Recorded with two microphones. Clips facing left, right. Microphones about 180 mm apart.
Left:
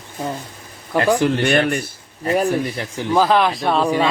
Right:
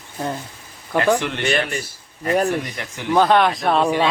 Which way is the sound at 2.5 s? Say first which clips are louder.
Left 3 dB; 35° left (ahead or behind).